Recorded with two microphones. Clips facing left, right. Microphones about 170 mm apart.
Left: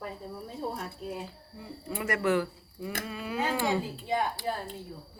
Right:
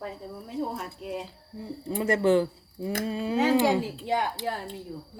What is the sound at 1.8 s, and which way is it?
Speech, 30° right (ahead or behind).